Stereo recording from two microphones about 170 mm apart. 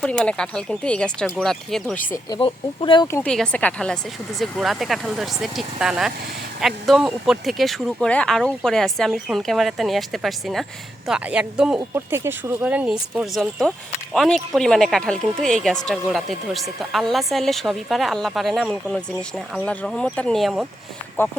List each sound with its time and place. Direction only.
0.0 s speech: 5° left (ahead or behind)
2.3 s speech: 30° left (ahead or behind)
3.2 s speech: 5° left (ahead or behind)
11.8 s speech: 15° right (ahead or behind)